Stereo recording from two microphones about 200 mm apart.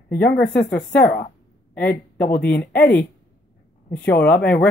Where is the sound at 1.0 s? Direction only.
50° left (ahead or behind).